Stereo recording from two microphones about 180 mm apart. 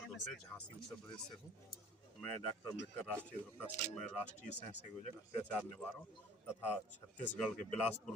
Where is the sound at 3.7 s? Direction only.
40° left (ahead or behind).